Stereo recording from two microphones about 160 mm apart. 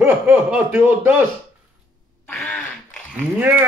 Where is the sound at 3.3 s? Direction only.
10° right (ahead or behind).